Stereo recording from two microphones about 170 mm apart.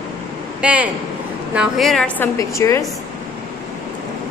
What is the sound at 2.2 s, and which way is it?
Speech, 20° left (ahead or behind).